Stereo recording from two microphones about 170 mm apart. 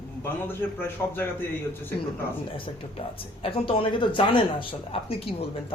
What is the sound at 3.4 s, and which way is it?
A woman's voice, 30° left (ahead or behind).